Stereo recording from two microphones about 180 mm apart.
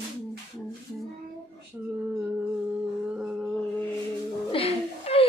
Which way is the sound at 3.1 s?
5° right (ahead or behind).